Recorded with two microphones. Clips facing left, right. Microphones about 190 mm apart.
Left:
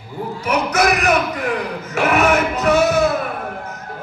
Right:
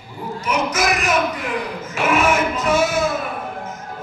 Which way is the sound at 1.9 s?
65° left (ahead or behind).